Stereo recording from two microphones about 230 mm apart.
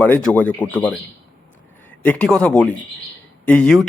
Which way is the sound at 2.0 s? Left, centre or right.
Centre.